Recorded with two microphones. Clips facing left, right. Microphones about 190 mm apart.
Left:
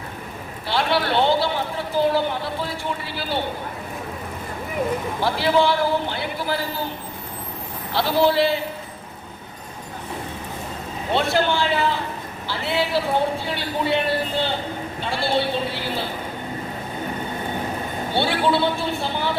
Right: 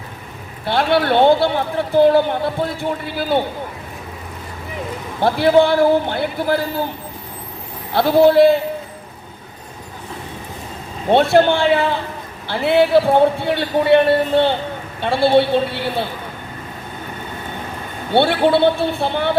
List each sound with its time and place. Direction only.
0.6 s a man's voice: 55° right (ahead or behind)
5.2 s a man's voice: 55° right (ahead or behind)
7.9 s speech: 50° right (ahead or behind)
11.1 s a man's voice: 55° right (ahead or behind)
18.1 s a man's voice: 60° right (ahead or behind)